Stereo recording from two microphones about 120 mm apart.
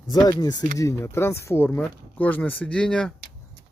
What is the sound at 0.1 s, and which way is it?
Speech, 35° left (ahead or behind).